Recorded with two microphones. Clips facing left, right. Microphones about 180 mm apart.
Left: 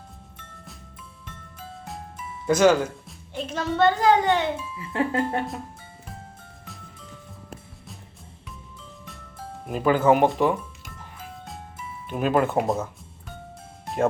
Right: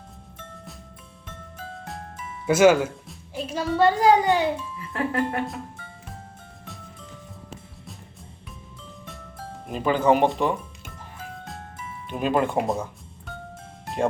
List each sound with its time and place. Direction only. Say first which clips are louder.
2.5 s a woman's voice: right 2 dB; 5° right (ahead or behind)
4.8 s speech: left 2 dB; 20° left (ahead or behind)
9.6 s speech: left 1 dB; 5° left (ahead or behind)
12.0 s speech: left 1 dB; centre (ahead or behind)
13.8 s music: left 1 dB; centre (ahead or behind)